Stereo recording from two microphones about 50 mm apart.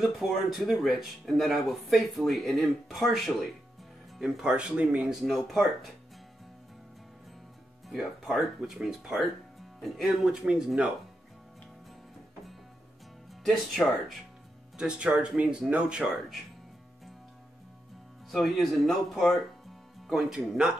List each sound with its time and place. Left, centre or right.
0.0 s speech: centre
4.2 s speech: centre
5.2 s speech: centre
7.9 s speech: centre
8.5 s speech: centre
9.8 s speech: centre
10.2 s speech: centre
13.5 s speech: centre
14.8 s speech: right
18.3 s speech: centre
20.1 s speech: centre